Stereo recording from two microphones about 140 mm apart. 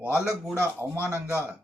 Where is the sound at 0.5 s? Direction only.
15° left (ahead or behind).